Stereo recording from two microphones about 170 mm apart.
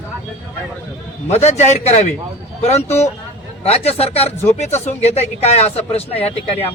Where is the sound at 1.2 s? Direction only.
40° left (ahead or behind).